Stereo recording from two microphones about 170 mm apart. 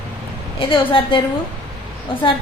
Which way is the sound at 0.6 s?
30° left (ahead or behind).